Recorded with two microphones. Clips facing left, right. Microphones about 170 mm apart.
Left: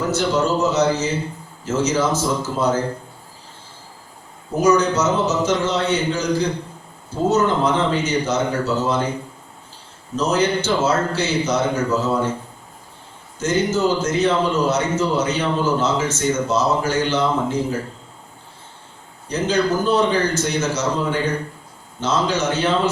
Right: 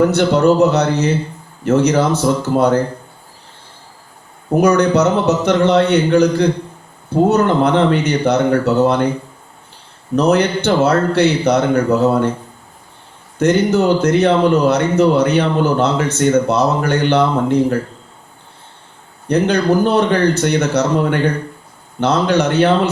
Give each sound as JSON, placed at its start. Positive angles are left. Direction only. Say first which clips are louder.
{"t": 0.0, "sound": "a man's voice", "louder": "right 7 dB", "side_deg": -65}
{"t": 4.5, "sound": "a man's voice", "louder": "right 4 dB", "side_deg": -65}
{"t": 10.2, "sound": "a man's voice", "louder": "right 5 dB", "side_deg": -65}
{"t": 13.4, "sound": "a man's voice", "louder": "right 6 dB", "side_deg": -65}
{"t": 19.3, "sound": "a man's voice", "louder": "right 6 dB", "side_deg": -65}